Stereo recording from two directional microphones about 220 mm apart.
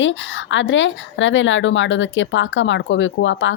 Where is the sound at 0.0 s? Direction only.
55° left (ahead or behind).